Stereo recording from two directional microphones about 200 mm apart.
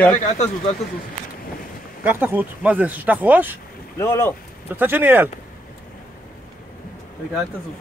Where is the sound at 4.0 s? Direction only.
15° left (ahead or behind).